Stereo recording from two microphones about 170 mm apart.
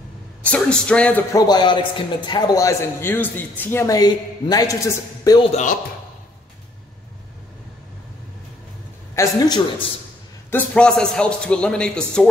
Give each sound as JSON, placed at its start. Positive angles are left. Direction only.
{"t": 0.4, "sound": "speech", "side_deg": 5}
{"t": 1.3, "sound": "a man's voice", "side_deg": 25}
{"t": 5.4, "sound": "speech", "side_deg": 40}
{"t": 9.1, "sound": "a man's voice", "side_deg": 20}
{"t": 10.5, "sound": "a man's voice", "side_deg": 5}